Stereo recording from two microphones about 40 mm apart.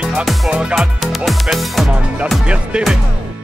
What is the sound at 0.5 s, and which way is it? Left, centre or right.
Speech, right.